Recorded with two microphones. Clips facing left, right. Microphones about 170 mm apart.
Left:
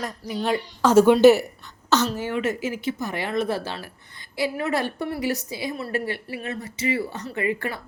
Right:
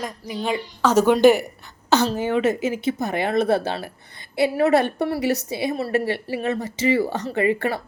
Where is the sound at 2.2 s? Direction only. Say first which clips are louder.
Right 5 dB; 20° right (ahead or behind).